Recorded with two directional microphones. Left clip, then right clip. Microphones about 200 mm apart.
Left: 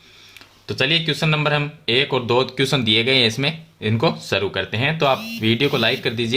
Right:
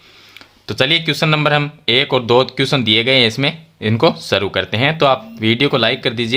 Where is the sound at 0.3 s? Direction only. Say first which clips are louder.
Right 5 dB; 30° right (ahead or behind).